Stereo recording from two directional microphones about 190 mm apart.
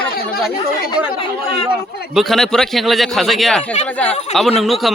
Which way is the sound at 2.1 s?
Centre (ahead or behind).